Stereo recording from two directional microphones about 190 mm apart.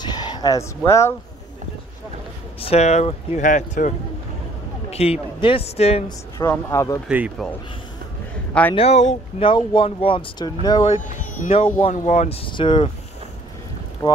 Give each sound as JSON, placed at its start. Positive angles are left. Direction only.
{"t": 0.0, "sound": "speech", "side_deg": 20}
{"t": 2.6, "sound": "speech", "side_deg": 35}
{"t": 4.9, "sound": "speech", "side_deg": 30}
{"t": 6.3, "sound": "speech", "side_deg": 15}
{"t": 7.1, "sound": "speech", "side_deg": -5}
{"t": 8.7, "sound": "speech", "side_deg": 35}
{"t": 14.0, "sound": "speech", "side_deg": 25}